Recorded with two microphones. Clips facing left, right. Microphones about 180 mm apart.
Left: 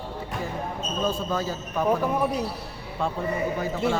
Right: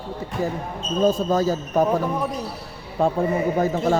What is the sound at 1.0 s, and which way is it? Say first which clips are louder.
Speech: right 9 dB; 40° right (ahead or behind).